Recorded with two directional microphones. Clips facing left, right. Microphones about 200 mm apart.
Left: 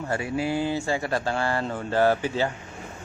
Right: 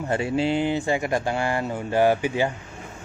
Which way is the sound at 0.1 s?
25° right (ahead or behind).